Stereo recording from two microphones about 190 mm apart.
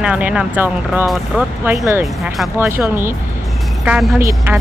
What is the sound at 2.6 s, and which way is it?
Speech, 10° right (ahead or behind).